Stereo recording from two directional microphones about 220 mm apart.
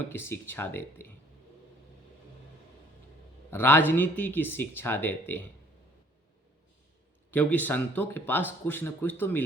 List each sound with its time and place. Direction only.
0.1 s speech: 10° left (ahead or behind)
3.5 s speech: 10° left (ahead or behind)
7.3 s speech: 10° left (ahead or behind)